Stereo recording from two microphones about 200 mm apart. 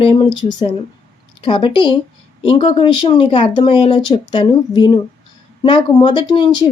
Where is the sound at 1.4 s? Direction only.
25° left (ahead or behind).